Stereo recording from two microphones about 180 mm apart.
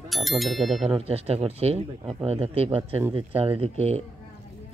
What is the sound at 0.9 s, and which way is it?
Speech, 35° right (ahead or behind).